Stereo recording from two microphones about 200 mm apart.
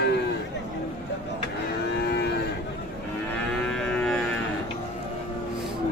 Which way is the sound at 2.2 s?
55° left (ahead or behind).